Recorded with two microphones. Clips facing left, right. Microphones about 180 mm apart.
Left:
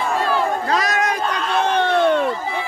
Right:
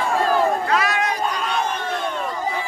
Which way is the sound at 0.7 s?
40° left (ahead or behind).